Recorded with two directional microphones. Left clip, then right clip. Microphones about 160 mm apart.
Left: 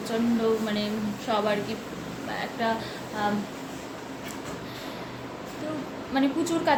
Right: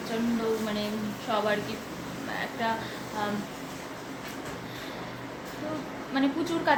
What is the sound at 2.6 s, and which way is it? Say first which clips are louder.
Speech: left 2 dB; 20° left (ahead or behind).